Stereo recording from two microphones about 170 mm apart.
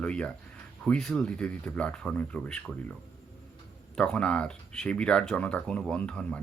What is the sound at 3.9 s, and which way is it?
Speech, 5° left (ahead or behind).